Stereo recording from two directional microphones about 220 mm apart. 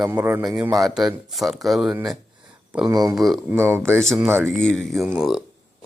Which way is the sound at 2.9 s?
15° right (ahead or behind).